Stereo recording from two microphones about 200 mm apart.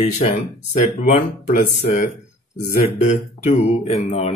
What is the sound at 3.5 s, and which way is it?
Speech, 30° left (ahead or behind).